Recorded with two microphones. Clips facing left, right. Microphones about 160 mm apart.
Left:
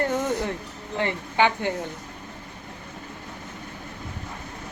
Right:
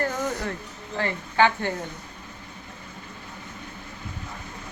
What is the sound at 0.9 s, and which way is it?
Speech, 20° left (ahead or behind).